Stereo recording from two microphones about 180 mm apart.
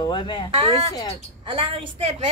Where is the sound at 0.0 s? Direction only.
25° left (ahead or behind).